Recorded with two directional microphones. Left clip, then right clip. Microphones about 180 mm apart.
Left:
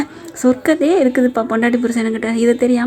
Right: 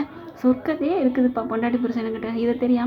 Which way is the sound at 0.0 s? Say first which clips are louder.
Left 7 dB; 40° left (ahead or behind).